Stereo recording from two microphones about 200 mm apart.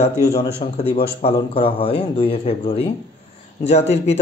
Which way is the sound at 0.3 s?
30° left (ahead or behind).